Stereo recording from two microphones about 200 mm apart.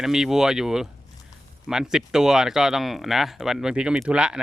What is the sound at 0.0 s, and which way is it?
Speech, centre (ahead or behind).